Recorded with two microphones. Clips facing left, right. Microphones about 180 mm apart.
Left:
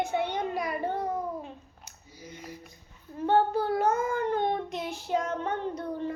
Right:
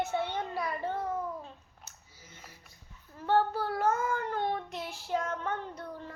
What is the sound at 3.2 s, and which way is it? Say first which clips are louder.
Child singing: left 4 dB; 20° left (ahead or behind).